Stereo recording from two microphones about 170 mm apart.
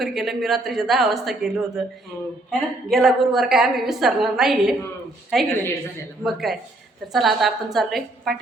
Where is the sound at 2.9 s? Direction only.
Centre (ahead or behind).